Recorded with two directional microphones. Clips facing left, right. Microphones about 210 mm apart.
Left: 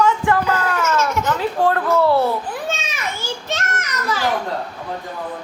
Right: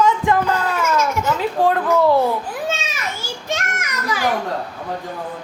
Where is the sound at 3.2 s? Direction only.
10° right (ahead or behind).